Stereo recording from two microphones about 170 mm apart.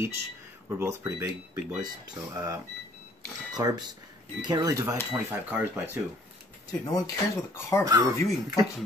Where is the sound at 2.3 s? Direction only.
20° right (ahead or behind).